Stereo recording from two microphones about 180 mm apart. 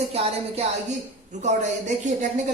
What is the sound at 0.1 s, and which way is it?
Speech, 35° right (ahead or behind).